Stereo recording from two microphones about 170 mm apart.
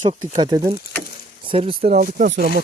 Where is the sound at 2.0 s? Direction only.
50° right (ahead or behind).